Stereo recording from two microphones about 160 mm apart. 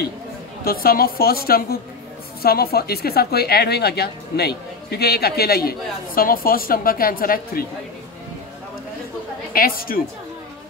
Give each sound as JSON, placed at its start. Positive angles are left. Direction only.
{"t": 0.7, "sound": "speech", "side_deg": 70}
{"t": 9.5, "sound": "a woman's voice", "side_deg": 65}